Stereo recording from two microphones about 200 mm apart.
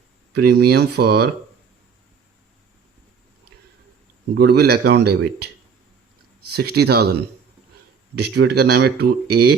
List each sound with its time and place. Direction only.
0.3 s speech: 55° right (ahead or behind)
4.4 s speech: 55° right (ahead or behind)
6.5 s speech: 55° right (ahead or behind)
8.2 s speech: 55° right (ahead or behind)